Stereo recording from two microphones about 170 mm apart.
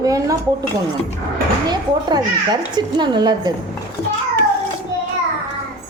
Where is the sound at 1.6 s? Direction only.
25° right (ahead or behind).